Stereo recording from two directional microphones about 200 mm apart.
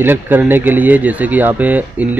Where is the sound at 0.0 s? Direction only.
10° right (ahead or behind).